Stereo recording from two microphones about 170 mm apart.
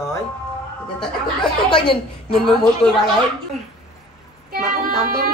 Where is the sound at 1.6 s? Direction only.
30° left (ahead or behind).